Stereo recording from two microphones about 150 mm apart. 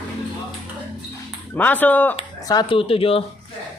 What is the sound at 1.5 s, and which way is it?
Speech, 10° left (ahead or behind).